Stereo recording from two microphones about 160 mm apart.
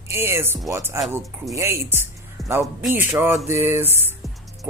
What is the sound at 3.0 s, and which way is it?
Speech, 15° right (ahead or behind).